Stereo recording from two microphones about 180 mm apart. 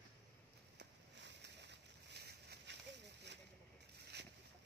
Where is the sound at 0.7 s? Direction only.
70° right (ahead or behind).